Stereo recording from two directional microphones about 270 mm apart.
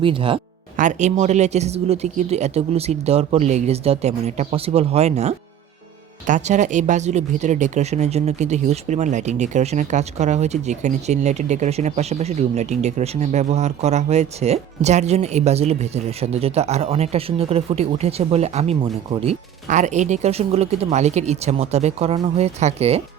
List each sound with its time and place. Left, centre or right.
0.0 s speech: centre